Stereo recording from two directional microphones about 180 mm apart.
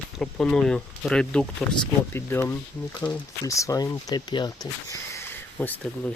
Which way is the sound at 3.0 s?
25° left (ahead or behind).